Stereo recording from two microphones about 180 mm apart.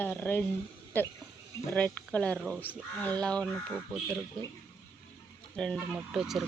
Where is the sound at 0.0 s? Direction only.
10° left (ahead or behind).